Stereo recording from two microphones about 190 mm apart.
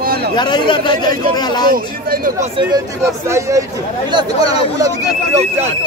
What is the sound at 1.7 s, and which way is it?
Speech, 50° right (ahead or behind).